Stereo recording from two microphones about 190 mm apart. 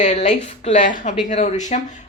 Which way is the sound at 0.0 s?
35° left (ahead or behind).